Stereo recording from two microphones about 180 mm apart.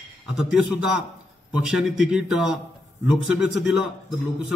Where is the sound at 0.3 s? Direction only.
5° right (ahead or behind).